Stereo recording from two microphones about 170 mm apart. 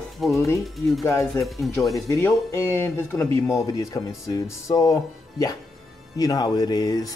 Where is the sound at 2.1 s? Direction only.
15° left (ahead or behind).